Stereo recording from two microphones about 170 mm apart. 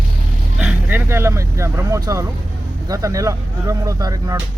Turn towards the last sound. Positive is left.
turn(degrees=-20)  # may be behind; listen again after turning